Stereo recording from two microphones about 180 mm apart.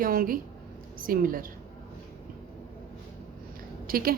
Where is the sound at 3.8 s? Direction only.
55° right (ahead or behind).